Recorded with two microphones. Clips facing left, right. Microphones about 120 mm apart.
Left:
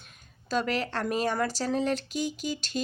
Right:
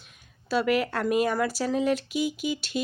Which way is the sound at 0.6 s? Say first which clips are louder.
Right 5 dB; 35° left (ahead or behind).